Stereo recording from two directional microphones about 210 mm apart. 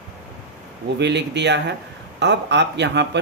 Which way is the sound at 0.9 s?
55° right (ahead or behind).